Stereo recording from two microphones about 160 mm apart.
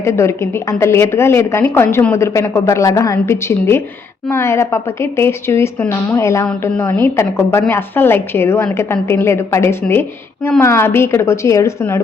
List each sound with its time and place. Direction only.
0.0 s a woman's voice: 15° left (ahead or behind)